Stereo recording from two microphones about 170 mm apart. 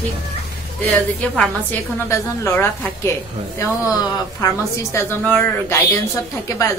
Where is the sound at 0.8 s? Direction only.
10° left (ahead or behind).